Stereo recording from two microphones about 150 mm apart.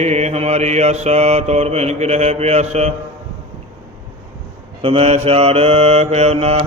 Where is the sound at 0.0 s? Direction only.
45° right (ahead or behind).